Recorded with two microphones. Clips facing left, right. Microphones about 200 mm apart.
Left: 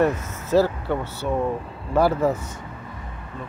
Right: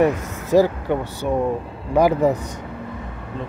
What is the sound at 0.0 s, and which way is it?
Speech, 15° right (ahead or behind).